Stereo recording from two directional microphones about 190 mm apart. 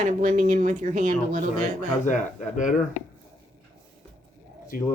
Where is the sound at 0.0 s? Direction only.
40° right (ahead or behind).